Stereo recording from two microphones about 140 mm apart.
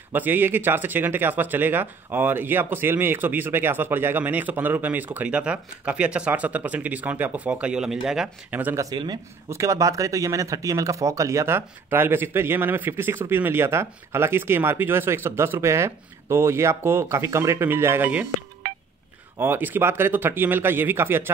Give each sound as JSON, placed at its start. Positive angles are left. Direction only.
{"t": 0.1, "sound": "speech", "side_deg": -15}
{"t": 8.8, "sound": "speech", "side_deg": -30}
{"t": 19.3, "sound": "speech", "side_deg": -15}